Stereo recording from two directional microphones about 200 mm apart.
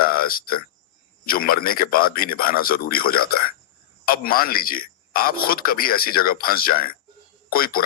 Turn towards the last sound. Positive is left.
turn(degrees=45)  # may be behind; listen again after turning